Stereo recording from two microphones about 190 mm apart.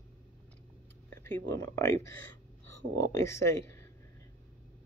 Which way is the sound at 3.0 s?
15° left (ahead or behind).